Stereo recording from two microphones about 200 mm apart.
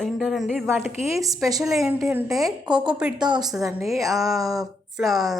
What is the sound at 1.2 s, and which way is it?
Speech, 15° right (ahead or behind).